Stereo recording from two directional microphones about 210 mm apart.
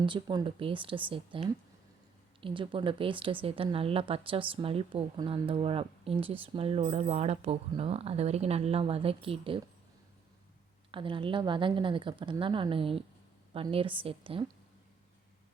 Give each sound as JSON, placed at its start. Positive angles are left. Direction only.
{"t": 0.0, "sound": "speech", "side_deg": -20}
{"t": 10.9, "sound": "speech", "side_deg": -25}